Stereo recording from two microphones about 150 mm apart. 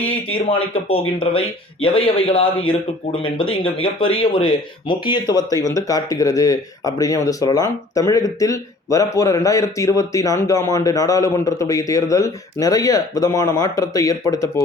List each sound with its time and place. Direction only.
0.1 s speech: 40° left (ahead or behind); by 14.6 s 20° left (ahead or behind)